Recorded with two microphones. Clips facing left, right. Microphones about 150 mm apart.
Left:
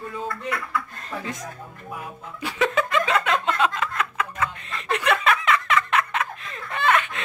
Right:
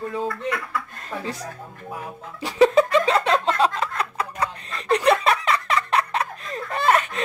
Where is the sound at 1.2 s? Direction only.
35° right (ahead or behind).